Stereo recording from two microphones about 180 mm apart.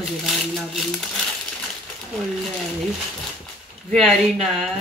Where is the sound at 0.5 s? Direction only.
Centre (ahead or behind).